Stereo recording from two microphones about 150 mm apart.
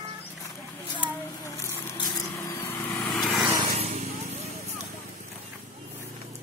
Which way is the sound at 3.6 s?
45° right (ahead or behind).